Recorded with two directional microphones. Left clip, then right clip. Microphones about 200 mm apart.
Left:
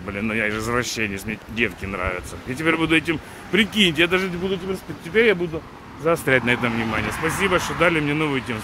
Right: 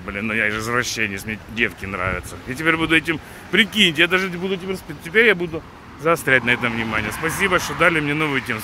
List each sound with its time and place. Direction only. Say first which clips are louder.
0.1 s speech: right 3 dB; 5° left (ahead or behind)
4.4 s speech: right 1 dB; 15° right (ahead or behind)
5.1 s speech: right 2 dB; centre (ahead or behind)